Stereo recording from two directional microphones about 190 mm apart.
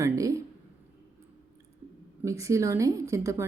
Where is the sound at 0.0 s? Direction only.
15° right (ahead or behind).